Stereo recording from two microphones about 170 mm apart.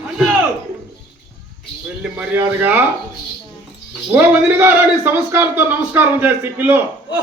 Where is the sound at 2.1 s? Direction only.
10° right (ahead or behind).